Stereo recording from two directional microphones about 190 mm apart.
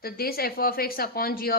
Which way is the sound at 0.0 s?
55° left (ahead or behind).